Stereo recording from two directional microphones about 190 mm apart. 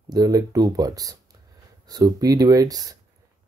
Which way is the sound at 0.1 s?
20° right (ahead or behind).